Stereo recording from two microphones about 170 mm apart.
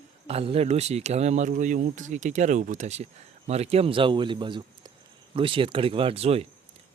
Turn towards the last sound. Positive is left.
turn(degrees=-35)  # may be behind; listen again after turning